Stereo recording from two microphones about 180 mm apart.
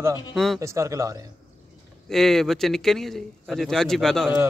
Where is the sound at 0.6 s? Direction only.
15° right (ahead or behind).